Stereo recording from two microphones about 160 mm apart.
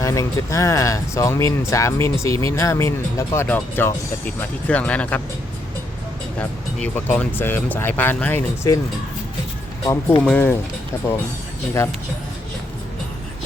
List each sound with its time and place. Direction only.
0.0 s speech: 20° left (ahead or behind)
6.7 s speech: 5° left (ahead or behind)
9.8 s speech: 25° left (ahead or behind)
10.2 s speech: 10° left (ahead or behind)